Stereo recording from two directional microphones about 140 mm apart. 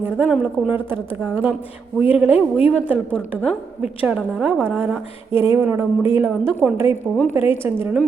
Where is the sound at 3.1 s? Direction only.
10° left (ahead or behind).